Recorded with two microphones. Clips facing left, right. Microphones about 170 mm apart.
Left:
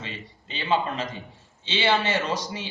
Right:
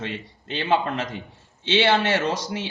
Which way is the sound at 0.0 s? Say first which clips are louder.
Right 6 dB; 65° right (ahead or behind).